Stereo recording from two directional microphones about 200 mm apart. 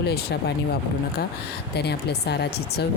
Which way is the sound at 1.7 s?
55° left (ahead or behind).